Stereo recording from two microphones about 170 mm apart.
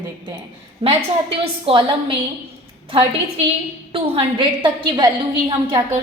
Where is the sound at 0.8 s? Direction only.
35° right (ahead or behind).